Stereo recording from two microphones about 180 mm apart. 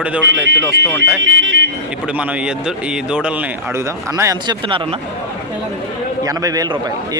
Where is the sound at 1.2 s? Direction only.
90° right.